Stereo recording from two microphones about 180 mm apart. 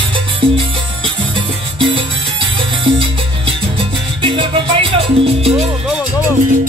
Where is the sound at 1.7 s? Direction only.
30° right (ahead or behind).